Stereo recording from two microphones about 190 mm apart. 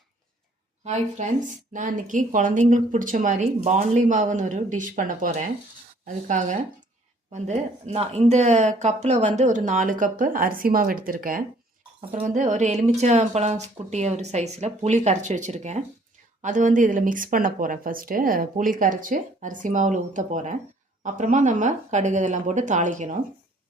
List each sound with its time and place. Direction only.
0.9 s speech: 40° right (ahead or behind)